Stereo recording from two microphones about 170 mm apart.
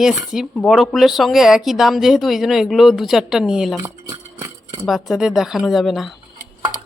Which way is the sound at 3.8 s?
15° right (ahead or behind).